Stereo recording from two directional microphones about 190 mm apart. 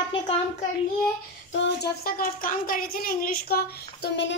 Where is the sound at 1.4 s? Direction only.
70° left (ahead or behind).